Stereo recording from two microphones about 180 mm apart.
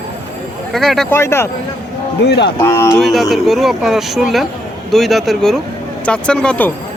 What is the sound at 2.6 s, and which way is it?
Speech, 15° left (ahead or behind).